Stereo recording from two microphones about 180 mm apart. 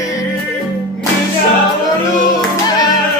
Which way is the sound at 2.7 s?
20° left (ahead or behind).